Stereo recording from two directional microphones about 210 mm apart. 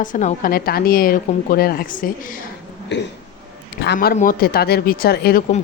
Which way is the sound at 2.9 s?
55° left (ahead or behind).